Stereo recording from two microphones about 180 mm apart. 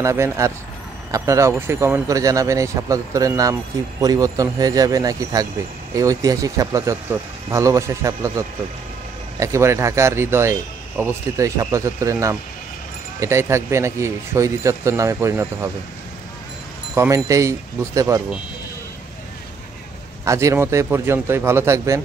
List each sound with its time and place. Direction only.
0.0 s a man's voice: 15° right (ahead or behind)
16.9 s speech: 15° right (ahead or behind)
20.2 s speech: 15° right (ahead or behind)